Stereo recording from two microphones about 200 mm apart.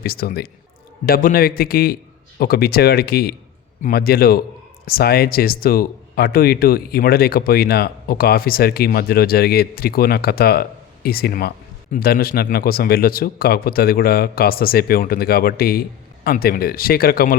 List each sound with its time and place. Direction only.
0.0 s speech: 50° left (ahead or behind)